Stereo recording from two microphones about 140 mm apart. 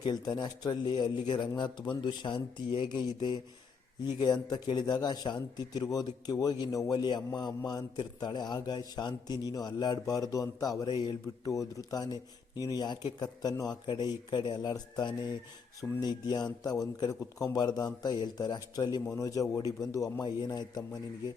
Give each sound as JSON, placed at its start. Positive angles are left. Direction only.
{"t": 0.0, "sound": "speech", "side_deg": 30}